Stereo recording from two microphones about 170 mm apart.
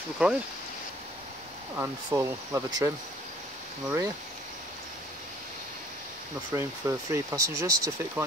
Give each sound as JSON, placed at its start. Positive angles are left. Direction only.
{"t": 0.2, "sound": "speech", "side_deg": -10}
{"t": 1.8, "sound": "speech", "side_deg": -15}
{"t": 6.5, "sound": "speech", "side_deg": -20}